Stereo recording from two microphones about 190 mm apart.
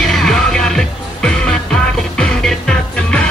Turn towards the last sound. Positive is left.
turn(degrees=5)  # may be behind; listen again after turning